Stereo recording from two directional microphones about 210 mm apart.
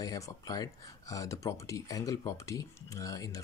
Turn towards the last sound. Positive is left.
turn(degrees=15)  # may be behind; listen again after turning